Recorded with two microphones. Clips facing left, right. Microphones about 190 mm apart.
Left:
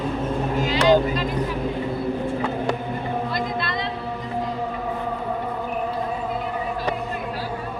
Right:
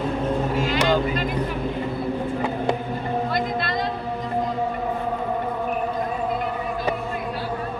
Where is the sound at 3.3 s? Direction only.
45° right (ahead or behind).